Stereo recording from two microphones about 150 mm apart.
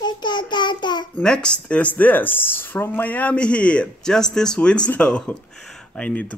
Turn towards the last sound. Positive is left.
turn(degrees=10)  # may be behind; listen again after turning